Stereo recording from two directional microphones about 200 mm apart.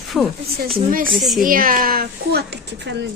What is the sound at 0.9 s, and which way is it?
Speech, 45° right (ahead or behind).